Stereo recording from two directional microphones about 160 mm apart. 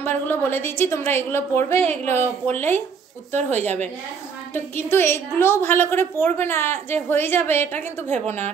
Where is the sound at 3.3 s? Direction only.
45° right (ahead or behind).